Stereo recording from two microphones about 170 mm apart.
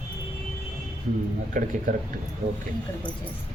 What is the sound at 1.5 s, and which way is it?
Speech, 55° right (ahead or behind).